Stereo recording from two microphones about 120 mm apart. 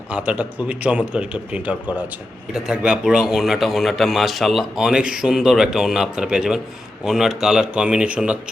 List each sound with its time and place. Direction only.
0.1 s a man's voice: 10° right (ahead or behind)